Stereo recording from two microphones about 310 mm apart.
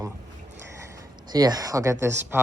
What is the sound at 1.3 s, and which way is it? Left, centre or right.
Speech, centre.